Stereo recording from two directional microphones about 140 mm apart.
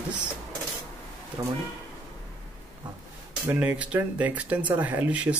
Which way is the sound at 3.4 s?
10° right (ahead or behind).